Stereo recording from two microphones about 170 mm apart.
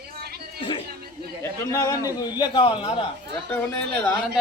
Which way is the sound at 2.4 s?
30° left (ahead or behind).